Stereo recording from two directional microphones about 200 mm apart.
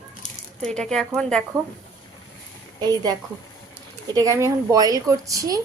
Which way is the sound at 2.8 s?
20° right (ahead or behind).